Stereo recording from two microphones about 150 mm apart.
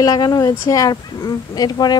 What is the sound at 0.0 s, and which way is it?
Speech, 25° left (ahead or behind).